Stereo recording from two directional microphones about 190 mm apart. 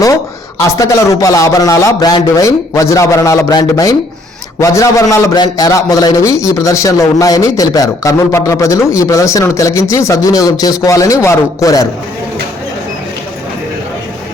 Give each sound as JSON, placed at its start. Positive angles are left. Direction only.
{"t": 0.6, "sound": "a man's voice", "side_deg": 15}